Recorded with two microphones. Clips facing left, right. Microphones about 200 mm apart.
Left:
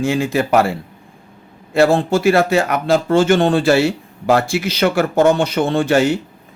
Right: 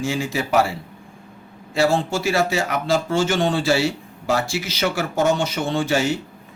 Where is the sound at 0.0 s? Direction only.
55° left (ahead or behind).